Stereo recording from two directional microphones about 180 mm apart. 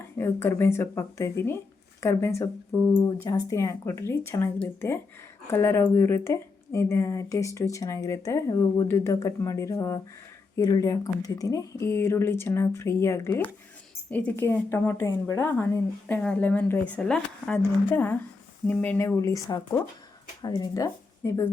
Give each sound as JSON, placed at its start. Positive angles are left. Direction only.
{"t": 0.2, "sound": "speech", "side_deg": 15}